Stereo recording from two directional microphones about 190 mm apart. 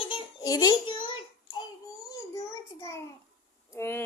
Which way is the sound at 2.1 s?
15° left (ahead or behind).